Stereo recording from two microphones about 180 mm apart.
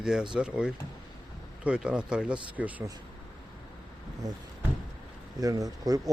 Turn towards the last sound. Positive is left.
turn(degrees=-20)  # may be behind; listen again after turning